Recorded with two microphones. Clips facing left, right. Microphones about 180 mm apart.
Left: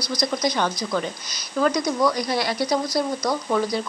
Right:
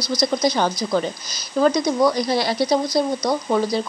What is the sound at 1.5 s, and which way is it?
Speech, 30° right (ahead or behind).